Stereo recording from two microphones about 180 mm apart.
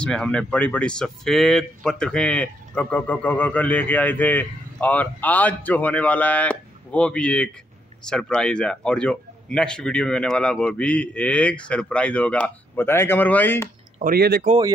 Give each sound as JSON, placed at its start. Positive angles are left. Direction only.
{"t": 0.0, "sound": "speech", "side_deg": 5}
{"t": 14.1, "sound": "speech", "side_deg": -60}